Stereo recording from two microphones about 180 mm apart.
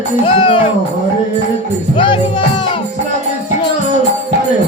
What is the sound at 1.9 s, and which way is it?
Music, 30° left (ahead or behind).